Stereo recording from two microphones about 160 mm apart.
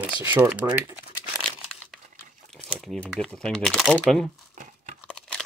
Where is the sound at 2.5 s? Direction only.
Centre (ahead or behind).